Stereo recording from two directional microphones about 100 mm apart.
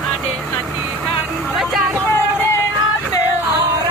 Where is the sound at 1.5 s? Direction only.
5° right (ahead or behind).